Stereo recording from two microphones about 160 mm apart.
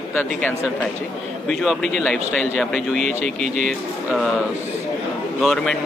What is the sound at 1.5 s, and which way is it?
A man's voice, centre (ahead or behind).